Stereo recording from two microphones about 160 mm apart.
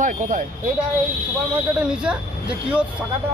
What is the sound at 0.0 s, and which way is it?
Speech, 55° right (ahead or behind).